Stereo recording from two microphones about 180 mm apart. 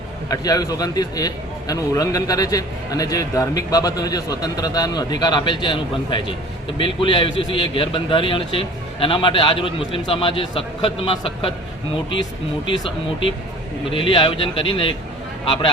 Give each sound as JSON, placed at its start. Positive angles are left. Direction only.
{"t": 0.3, "sound": "a man's voice", "side_deg": 20}
{"t": 12.6, "sound": "a man's voice", "side_deg": 25}